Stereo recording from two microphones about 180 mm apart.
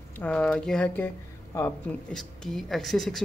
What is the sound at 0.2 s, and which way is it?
Speech, 5° left (ahead or behind).